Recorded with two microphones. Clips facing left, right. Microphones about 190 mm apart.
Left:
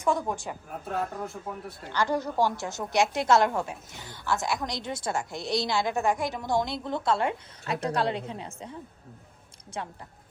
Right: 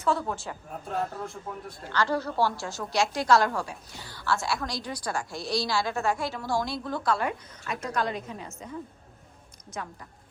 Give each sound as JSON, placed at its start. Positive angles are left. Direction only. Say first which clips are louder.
{"t": 0.0, "sound": "a woman's voice", "louder": "left 1 dB", "side_deg": 15}
{"t": 1.3, "sound": "a man's voice", "louder": "left 1 dB", "side_deg": 0}
{"t": 1.9, "sound": "a woman's voice", "louder": "even", "side_deg": 15}
{"t": 9.7, "sound": "speech", "louder": "left 2 dB", "side_deg": 30}